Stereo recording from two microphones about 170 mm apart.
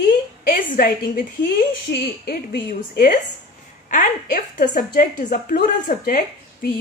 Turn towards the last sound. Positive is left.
turn(degrees=55)  # may be behind; listen again after turning